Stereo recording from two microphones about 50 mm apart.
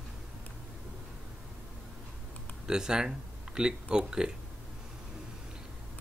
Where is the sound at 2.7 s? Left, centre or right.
Centre.